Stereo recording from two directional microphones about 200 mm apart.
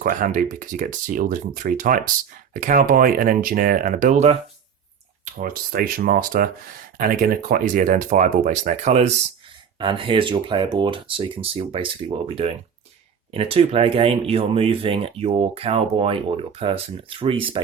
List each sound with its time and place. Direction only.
0.0 s speech: 40° right (ahead or behind)
9.7 s speech: 25° right (ahead or behind)